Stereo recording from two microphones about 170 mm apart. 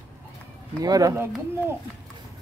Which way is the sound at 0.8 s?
20° right (ahead or behind).